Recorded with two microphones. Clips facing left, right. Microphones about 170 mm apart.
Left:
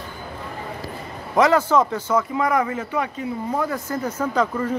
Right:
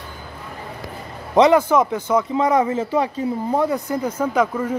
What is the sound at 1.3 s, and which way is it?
Speech, 20° right (ahead or behind).